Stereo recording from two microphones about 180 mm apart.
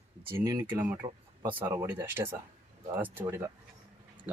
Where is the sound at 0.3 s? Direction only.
15° right (ahead or behind).